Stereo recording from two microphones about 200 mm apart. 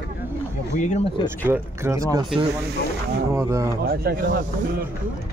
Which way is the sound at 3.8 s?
50° right (ahead or behind).